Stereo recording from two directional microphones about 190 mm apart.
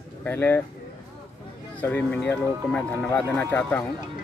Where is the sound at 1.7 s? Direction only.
5° left (ahead or behind).